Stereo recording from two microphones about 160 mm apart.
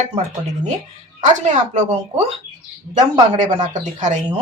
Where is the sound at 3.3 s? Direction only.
50° right (ahead or behind).